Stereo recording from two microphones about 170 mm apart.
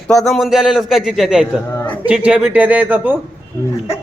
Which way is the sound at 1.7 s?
10° left (ahead or behind).